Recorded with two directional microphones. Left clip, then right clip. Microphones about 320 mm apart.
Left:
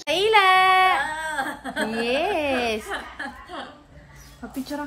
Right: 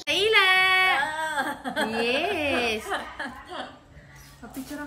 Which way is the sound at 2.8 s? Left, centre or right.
Centre.